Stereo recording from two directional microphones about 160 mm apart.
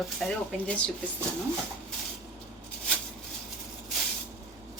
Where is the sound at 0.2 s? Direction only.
Centre (ahead or behind).